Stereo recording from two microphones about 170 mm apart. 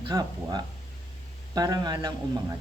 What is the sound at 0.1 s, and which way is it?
A woman's voice, 25° right (ahead or behind).